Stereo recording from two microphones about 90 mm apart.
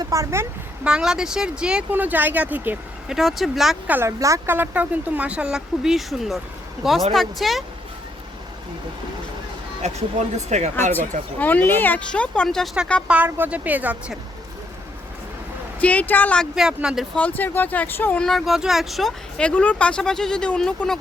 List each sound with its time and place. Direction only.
0.1 s speech: 35° right (ahead or behind)
0.9 s speech: 10° right (ahead or behind)
1.9 s speech: 20° right (ahead or behind)
3.1 s speech: centre (ahead or behind)
3.8 s speech: 20° right (ahead or behind); by 7.6 s centre (ahead or behind)
10.8 s speech: 20° left (ahead or behind); by 12.7 s 5° left (ahead or behind)
13.1 s speech: 20° right (ahead or behind)
15.8 s speech: 15° left (ahead or behind)
16.6 s speech: 5° right (ahead or behind)
17.2 s speech: 20° left (ahead or behind)
18.2 s speech: centre (ahead or behind)
19.4 s speech: 15° left (ahead or behind)